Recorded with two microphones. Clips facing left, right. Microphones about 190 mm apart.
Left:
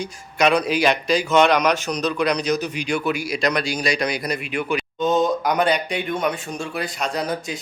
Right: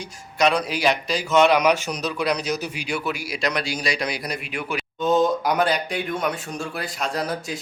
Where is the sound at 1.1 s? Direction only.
5° right (ahead or behind).